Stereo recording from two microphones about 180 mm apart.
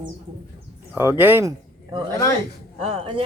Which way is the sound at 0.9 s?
10° right (ahead or behind).